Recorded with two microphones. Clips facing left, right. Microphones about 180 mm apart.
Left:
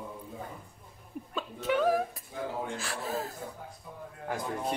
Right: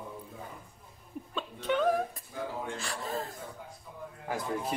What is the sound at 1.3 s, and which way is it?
Speech, 5° left (ahead or behind).